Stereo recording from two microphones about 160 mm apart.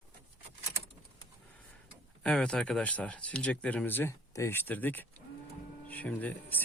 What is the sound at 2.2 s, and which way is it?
Speech, 5° left (ahead or behind).